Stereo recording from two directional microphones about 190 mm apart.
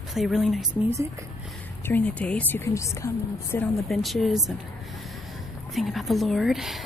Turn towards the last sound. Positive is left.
turn(degrees=0)  # may be behind; listen again after turning